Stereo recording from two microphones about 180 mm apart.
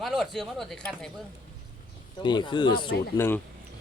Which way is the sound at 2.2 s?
25° left (ahead or behind).